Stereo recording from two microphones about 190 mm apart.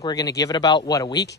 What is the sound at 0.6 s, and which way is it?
Speech, 20° left (ahead or behind).